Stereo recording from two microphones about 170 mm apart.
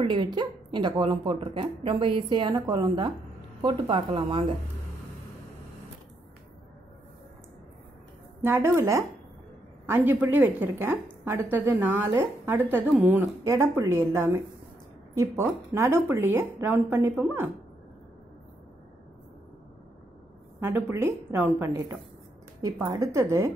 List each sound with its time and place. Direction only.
0.0 s a woman's voice: 25° right (ahead or behind)
8.5 s a woman's voice: 15° right (ahead or behind)
20.6 s a woman's voice: 15° right (ahead or behind)